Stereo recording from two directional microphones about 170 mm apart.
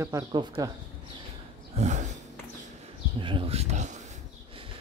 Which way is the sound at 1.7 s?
45° right (ahead or behind).